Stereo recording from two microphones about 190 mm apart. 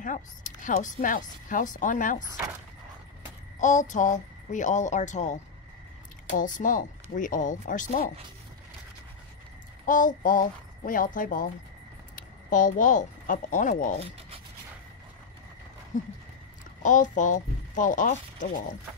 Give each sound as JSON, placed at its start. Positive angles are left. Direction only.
{"t": 0.0, "sound": "speech", "side_deg": 40}
{"t": 3.6, "sound": "speech", "side_deg": 40}
{"t": 9.8, "sound": "speech", "side_deg": 45}
{"t": 15.9, "sound": "speech", "side_deg": 45}